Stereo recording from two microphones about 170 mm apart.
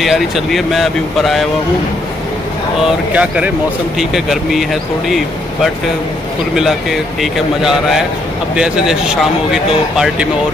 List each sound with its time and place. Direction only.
0.0 s speech: centre (ahead or behind)
2.8 s speech: 5° right (ahead or behind)